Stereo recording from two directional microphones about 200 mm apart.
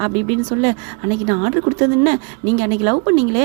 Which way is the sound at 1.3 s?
35° right (ahead or behind).